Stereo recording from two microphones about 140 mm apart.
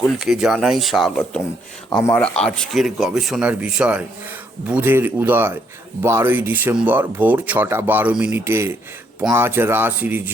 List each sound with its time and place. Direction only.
0.0 s speech: 5° right (ahead or behind)
2.0 s speech: 10° left (ahead or behind); by 10.3 s 15° right (ahead or behind)